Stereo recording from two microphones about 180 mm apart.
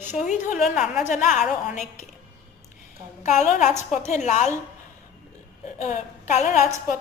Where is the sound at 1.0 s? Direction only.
45° left (ahead or behind).